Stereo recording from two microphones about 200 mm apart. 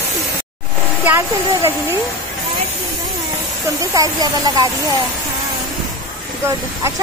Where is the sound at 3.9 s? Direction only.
20° right (ahead or behind).